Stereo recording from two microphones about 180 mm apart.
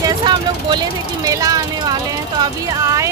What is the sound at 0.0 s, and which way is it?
Vehicle, 25° right (ahead or behind).